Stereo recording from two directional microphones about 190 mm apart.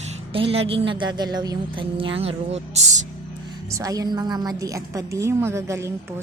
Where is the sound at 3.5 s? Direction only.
15° right (ahead or behind).